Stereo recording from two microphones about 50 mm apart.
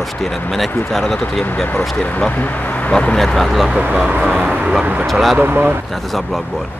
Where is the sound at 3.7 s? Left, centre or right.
Right.